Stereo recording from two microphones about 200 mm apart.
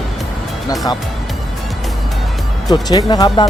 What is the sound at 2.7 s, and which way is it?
Speech, 20° left (ahead or behind).